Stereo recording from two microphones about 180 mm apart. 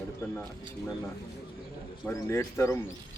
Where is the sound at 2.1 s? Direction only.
15° left (ahead or behind).